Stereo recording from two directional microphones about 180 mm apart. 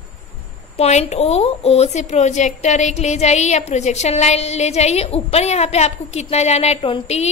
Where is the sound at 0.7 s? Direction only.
35° left (ahead or behind).